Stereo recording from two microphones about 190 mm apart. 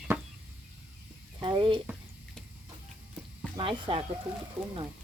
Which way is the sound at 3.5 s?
30° right (ahead or behind).